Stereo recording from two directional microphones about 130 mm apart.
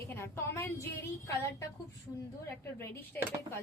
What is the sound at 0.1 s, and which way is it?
A woman's voice, 20° left (ahead or behind).